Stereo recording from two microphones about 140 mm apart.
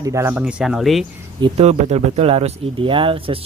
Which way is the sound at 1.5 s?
50° right (ahead or behind).